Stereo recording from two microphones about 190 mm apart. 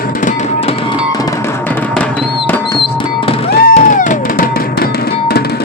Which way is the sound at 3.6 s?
40° left (ahead or behind).